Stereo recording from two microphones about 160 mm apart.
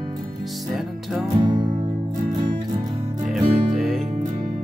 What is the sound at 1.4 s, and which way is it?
Music, 30° right (ahead or behind).